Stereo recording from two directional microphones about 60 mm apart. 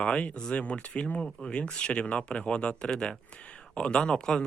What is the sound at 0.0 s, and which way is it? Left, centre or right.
Speech, centre.